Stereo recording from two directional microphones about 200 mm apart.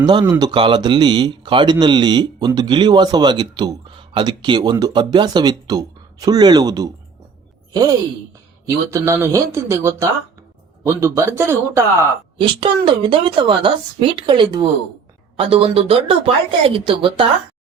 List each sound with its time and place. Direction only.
0.0 s a man's voice: 20° right (ahead or behind)
12.5 s a man's voice: 25° right (ahead or behind)